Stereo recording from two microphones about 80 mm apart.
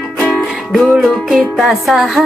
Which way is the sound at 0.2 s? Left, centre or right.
Centre.